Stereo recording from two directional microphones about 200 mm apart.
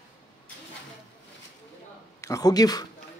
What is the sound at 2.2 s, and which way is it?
Speech, 15° left (ahead or behind).